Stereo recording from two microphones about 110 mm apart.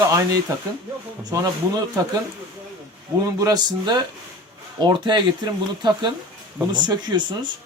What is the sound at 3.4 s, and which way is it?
Speech, 35° right (ahead or behind).